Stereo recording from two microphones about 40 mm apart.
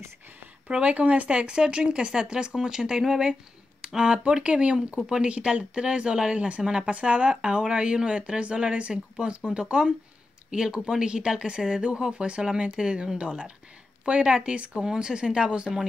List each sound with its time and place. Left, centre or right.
0.7 s speech: right